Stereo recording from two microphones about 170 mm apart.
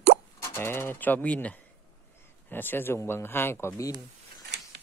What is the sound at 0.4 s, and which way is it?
Speech, 15° left (ahead or behind).